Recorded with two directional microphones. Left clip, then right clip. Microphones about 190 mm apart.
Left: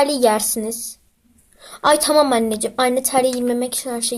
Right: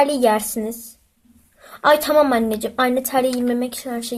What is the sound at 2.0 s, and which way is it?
Speech, 25° left (ahead or behind).